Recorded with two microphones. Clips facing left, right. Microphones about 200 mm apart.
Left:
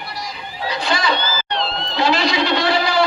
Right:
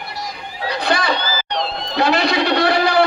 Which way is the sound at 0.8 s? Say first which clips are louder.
Right 1 dB; 60° right (ahead or behind).